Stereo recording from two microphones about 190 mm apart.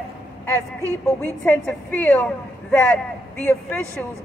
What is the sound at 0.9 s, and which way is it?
A woman's voice, 10° left (ahead or behind).